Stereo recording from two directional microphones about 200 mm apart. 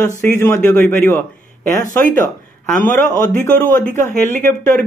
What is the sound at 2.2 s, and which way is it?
Speech, 5° left (ahead or behind).